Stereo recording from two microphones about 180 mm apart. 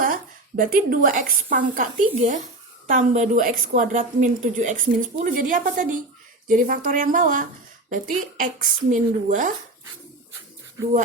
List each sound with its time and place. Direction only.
0.0 s a woman's voice: 50° right (ahead or behind)